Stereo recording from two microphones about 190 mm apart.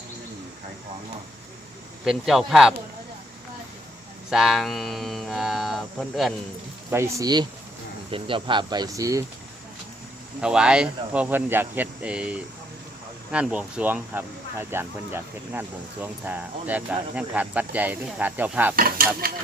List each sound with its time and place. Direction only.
2.0 s speech: centre (ahead or behind)
4.3 s speech: centre (ahead or behind)
6.9 s speech: 15° right (ahead or behind)
10.4 s speech: 5° right (ahead or behind)
18.8 s stir: 50° right (ahead or behind)
19.2 s speech: 50° right (ahead or behind)